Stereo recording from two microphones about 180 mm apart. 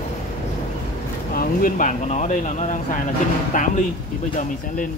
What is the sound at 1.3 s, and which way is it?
Speech, 55° left (ahead or behind).